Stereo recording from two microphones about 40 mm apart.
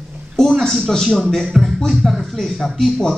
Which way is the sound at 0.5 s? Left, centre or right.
Centre.